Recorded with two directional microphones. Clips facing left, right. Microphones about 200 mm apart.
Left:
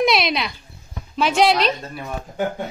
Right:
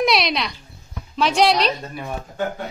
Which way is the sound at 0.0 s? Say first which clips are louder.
Left 1 dB; centre (ahead or behind).